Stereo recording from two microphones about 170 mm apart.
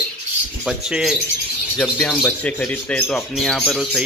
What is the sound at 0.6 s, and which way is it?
Speech, 5° right (ahead or behind).